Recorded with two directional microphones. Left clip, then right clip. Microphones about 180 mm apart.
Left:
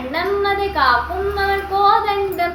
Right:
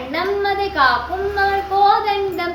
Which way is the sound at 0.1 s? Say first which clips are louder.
Left 1 dB; 15° right (ahead or behind).